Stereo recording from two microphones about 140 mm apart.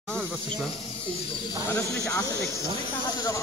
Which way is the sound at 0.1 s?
10° left (ahead or behind).